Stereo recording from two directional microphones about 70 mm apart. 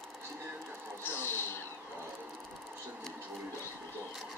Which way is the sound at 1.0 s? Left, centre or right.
Left.